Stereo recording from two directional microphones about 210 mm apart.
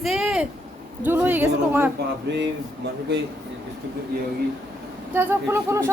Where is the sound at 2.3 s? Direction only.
50° right (ahead or behind).